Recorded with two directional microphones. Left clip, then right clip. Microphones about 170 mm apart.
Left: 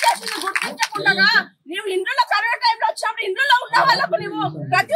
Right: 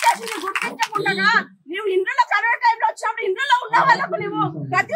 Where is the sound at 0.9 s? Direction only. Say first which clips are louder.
Left 2 dB; 20° left (ahead or behind).